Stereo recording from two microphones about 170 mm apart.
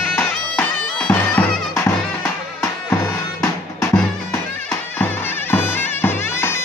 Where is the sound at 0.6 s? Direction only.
10° left (ahead or behind).